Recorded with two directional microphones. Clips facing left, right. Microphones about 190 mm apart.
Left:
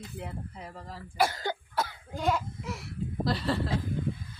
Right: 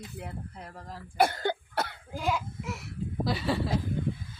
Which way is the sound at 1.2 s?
55° right (ahead or behind).